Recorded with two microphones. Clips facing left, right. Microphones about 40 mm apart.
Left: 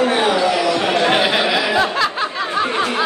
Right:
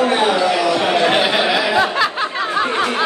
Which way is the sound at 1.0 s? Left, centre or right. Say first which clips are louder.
Right 1 dB; centre.